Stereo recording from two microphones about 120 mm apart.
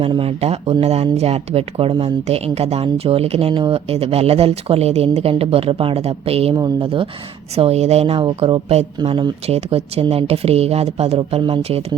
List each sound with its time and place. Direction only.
0.1 s speech: 55° right (ahead or behind)
6.5 s speech: 45° right (ahead or behind)
7.5 s speech: 60° right (ahead or behind); by 9.0 s 45° right (ahead or behind)
9.5 s speech: 55° right (ahead or behind)